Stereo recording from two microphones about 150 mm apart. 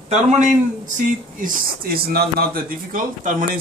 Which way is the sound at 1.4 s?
85° right.